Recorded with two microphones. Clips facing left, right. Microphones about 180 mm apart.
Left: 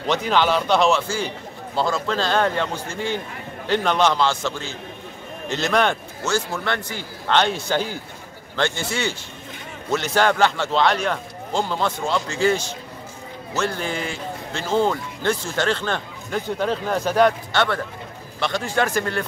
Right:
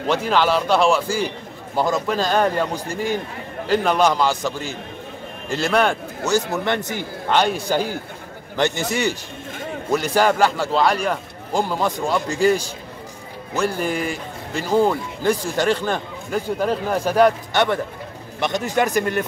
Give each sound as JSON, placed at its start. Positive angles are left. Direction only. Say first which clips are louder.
{"t": 0.0, "sound": "speech", "louder": "right 1 dB", "side_deg": -5}
{"t": 6.3, "sound": "speech", "louder": "right 4 dB", "side_deg": -15}
{"t": 9.8, "sound": "speech", "louder": "right 2 dB", "side_deg": -10}